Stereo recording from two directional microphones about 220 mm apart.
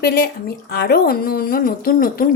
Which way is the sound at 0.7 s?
45° left (ahead or behind).